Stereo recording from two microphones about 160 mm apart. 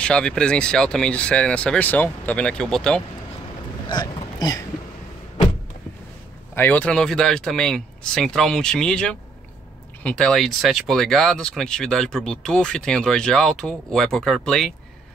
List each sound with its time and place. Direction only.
0.0 s speech: 5° left (ahead or behind)
3.9 s a sound: 25° left (ahead or behind)
6.5 s speech: 10° left (ahead or behind)